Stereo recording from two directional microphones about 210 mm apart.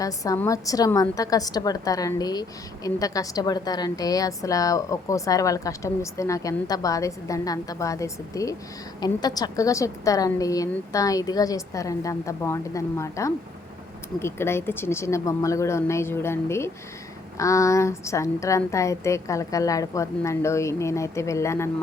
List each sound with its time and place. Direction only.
0.0 s a woman's voice: 15° left (ahead or behind)